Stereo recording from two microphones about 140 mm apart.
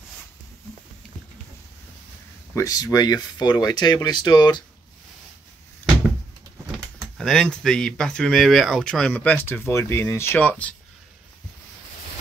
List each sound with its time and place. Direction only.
2.5 s speech: 25° left (ahead or behind)
6.7 s speech: centre (ahead or behind)